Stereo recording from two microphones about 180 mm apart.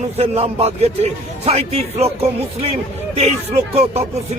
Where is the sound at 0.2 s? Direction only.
35° right (ahead or behind).